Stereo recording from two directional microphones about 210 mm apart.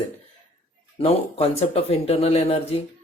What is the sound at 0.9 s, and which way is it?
Speech, 30° left (ahead or behind).